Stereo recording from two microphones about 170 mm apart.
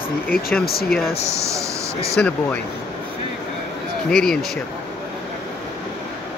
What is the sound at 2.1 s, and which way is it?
Speech, 5° left (ahead or behind).